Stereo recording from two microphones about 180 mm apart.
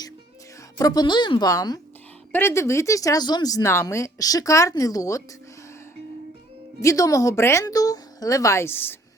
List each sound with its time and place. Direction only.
0.8 s a woman's voice: 20° left (ahead or behind)
6.8 s speech: 20° left (ahead or behind)